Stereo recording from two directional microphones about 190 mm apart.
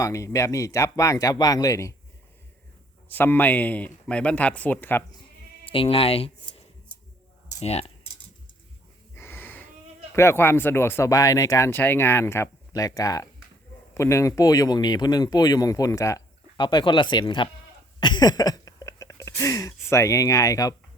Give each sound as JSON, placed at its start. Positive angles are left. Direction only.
{"t": 0.0, "sound": "speech", "side_deg": 15}
{"t": 3.1, "sound": "speech", "side_deg": 10}
{"t": 5.6, "sound": "speech", "side_deg": 30}
{"t": 7.6, "sound": "speech", "side_deg": 35}
{"t": 9.1, "sound": "wheeze", "side_deg": 10}
{"t": 10.2, "sound": "speech", "side_deg": 15}
{"t": 18.0, "sound": "gasp", "side_deg": 20}